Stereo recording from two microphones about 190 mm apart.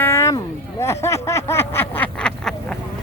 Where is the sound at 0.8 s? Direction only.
15° left (ahead or behind).